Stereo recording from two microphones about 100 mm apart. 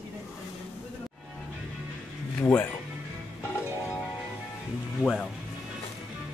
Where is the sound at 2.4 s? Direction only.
15° left (ahead or behind).